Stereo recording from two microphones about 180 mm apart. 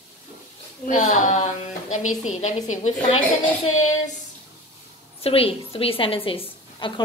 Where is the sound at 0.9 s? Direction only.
40° left (ahead or behind).